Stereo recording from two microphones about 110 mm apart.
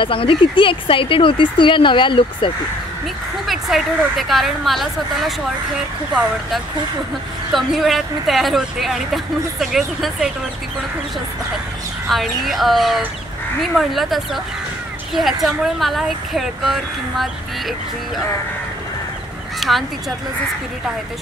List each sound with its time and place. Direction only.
0.0 s speech: 55° left (ahead or behind)
3.4 s speech: centre (ahead or behind)
7.5 s speech: centre (ahead or behind)
12.1 s speech: centre (ahead or behind)
19.7 s speech: 5° right (ahead or behind)